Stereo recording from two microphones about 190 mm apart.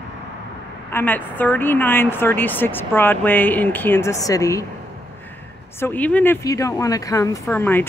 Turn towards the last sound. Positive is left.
turn(degrees=10)  # may be behind; listen again after turning